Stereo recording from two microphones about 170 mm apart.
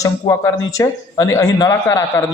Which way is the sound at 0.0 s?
20° left (ahead or behind).